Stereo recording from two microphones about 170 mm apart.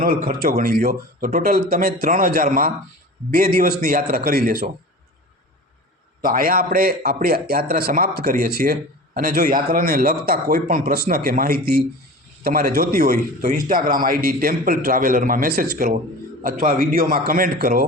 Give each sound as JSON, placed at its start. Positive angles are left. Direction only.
{"t": 0.0, "sound": "a man's voice", "side_deg": -55}
{"t": 6.2, "sound": "a man's voice", "side_deg": -55}
{"t": 16.4, "sound": "a man's voice", "side_deg": -50}